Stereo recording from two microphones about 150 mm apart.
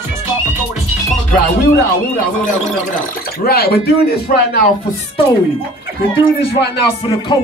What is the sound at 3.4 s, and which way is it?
Speech, 90° left.